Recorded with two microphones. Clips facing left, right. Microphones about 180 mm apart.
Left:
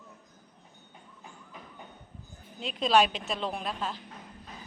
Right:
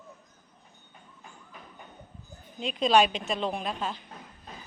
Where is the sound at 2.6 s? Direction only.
Centre (ahead or behind).